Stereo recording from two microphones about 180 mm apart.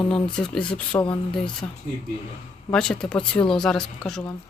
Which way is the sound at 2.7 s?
5° left (ahead or behind).